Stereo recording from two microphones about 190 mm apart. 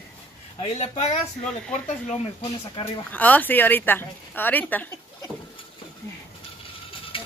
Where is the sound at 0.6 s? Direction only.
35° left (ahead or behind).